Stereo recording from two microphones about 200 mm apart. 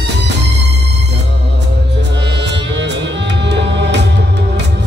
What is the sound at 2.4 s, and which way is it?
Music, 60° right (ahead or behind).